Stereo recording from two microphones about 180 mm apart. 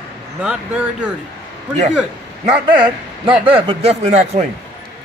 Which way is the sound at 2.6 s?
25° right (ahead or behind).